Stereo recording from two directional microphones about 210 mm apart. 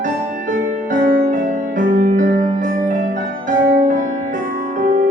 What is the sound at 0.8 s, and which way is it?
Music, 40° right (ahead or behind).